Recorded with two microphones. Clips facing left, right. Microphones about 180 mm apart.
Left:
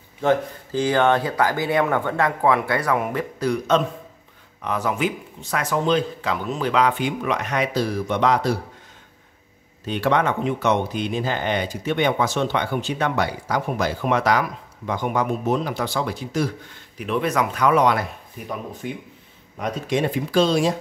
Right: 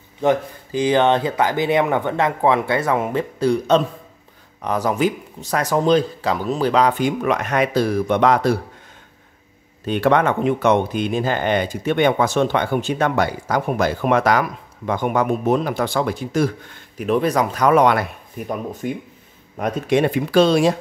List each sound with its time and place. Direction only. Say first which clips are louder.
0.2 s speech: right 2 dB; 15° right (ahead or behind); by 8.5 s 55° right (ahead or behind)
9.8 s speech: right 4 dB; 50° right (ahead or behind)
17.0 s speech: right 4 dB; 40° right (ahead or behind)
19.6 s speech: right 5 dB; 65° right (ahead or behind)